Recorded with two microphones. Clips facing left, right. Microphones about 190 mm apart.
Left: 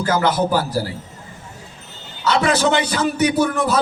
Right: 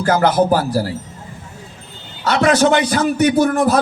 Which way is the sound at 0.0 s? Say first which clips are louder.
Right 4 dB; 55° right (ahead or behind).